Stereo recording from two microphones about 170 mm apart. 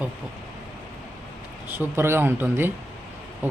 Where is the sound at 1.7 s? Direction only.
15° right (ahead or behind).